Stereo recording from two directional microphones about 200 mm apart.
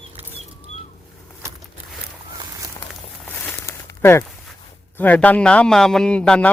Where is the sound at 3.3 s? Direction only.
10° left (ahead or behind).